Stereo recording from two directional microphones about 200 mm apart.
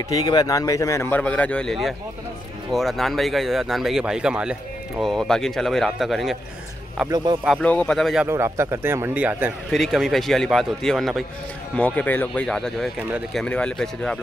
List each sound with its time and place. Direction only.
0.1 s speech: 20° left (ahead or behind); by 6.3 s centre (ahead or behind)
7.1 s speech: 20° right (ahead or behind)
7.6 s speech: 5° left (ahead or behind)
8.3 s speech: 15° right (ahead or behind); by 14.1 s 5° left (ahead or behind)